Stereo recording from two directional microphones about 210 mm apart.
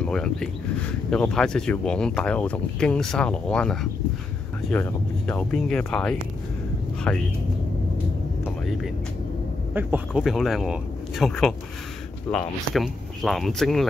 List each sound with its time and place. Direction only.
0.0 s speech: 5° left (ahead or behind)
8.6 s speech: centre (ahead or behind)